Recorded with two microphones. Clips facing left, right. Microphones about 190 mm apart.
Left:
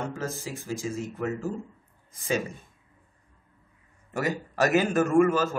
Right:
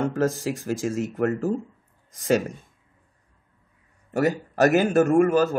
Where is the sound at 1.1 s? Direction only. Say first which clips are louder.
Right 8 dB; 55° right (ahead or behind).